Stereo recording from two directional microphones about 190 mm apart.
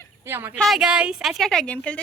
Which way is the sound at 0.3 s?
10° right (ahead or behind).